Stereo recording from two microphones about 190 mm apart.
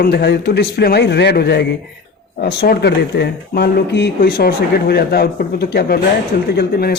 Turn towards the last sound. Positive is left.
turn(degrees=55)  # may be behind; listen again after turning